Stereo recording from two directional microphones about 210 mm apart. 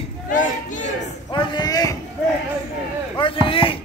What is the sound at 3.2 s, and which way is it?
Speech, 25° left (ahead or behind).